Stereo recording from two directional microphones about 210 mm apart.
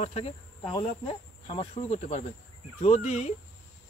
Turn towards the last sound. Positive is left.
turn(degrees=30)  # may be behind; listen again after turning